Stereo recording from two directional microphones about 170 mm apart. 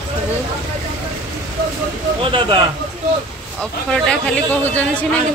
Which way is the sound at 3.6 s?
5° left (ahead or behind).